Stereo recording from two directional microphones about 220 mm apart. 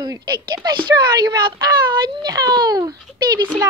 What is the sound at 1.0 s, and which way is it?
A child's voice, 20° right (ahead or behind).